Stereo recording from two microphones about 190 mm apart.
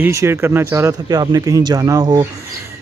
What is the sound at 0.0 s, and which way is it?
Speech, 15° right (ahead or behind).